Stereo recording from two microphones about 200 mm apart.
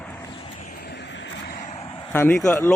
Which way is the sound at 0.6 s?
45° left (ahead or behind).